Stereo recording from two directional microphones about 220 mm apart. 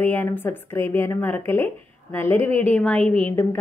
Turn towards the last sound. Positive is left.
turn(degrees=5)  # may be behind; listen again after turning